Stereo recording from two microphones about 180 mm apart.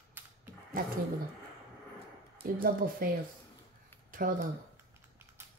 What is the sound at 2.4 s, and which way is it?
Speech, 50° right (ahead or behind).